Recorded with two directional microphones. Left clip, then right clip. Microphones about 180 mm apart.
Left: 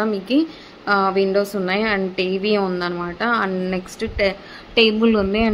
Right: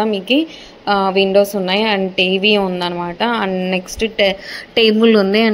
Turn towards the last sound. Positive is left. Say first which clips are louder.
# right 6 dB
turn(degrees=-25)  # may be behind; listen again after turning